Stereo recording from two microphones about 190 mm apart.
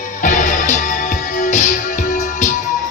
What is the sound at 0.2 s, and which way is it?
Music, 40° left (ahead or behind).